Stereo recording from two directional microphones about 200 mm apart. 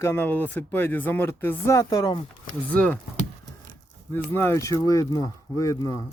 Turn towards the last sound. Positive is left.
turn(degrees=15)  # may be behind; listen again after turning